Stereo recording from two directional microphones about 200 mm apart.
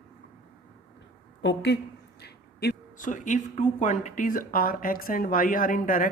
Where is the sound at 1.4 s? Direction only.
60° left (ahead or behind).